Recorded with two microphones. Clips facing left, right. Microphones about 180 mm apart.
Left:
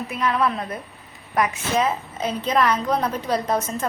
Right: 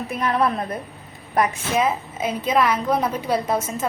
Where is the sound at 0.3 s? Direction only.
40° right (ahead or behind).